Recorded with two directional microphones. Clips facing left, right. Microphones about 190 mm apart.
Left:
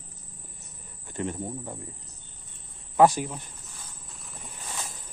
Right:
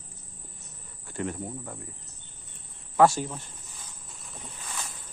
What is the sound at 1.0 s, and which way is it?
Speech, 20° left (ahead or behind).